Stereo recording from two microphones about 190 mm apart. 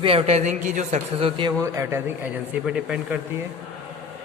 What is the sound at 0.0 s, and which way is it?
A man's voice, 30° right (ahead or behind).